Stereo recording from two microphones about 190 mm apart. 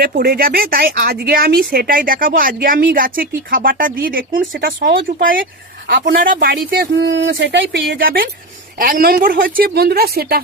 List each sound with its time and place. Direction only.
0.0 s speech: 50° right (ahead or behind); by 7.9 s 70° right (ahead or behind)
7.9 s speech: 50° right (ahead or behind)